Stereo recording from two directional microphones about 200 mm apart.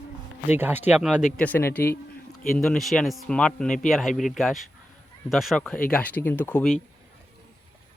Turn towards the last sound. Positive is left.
turn(degrees=5)  # may be behind; listen again after turning